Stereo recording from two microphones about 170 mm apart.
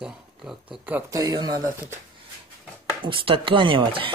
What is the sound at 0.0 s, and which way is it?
Speech, 5° right (ahead or behind).